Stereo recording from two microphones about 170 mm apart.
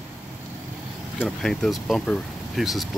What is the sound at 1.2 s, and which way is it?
Speech, centre (ahead or behind).